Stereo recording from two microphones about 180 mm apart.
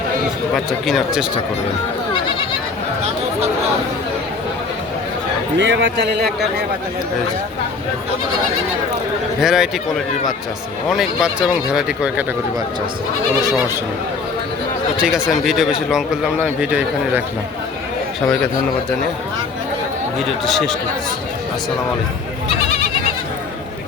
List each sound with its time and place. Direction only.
0.5 s a man's voice: centre (ahead or behind)
5.5 s a man's voice: 80° right
9.4 s a man's voice: centre (ahead or behind)
10.8 s a man's voice: centre (ahead or behind)
15.0 s a man's voice: centre (ahead or behind)
20.4 s a man's voice: centre (ahead or behind)